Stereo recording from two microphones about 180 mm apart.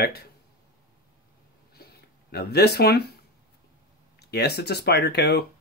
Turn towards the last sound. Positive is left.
turn(degrees=65)  # may be behind; listen again after turning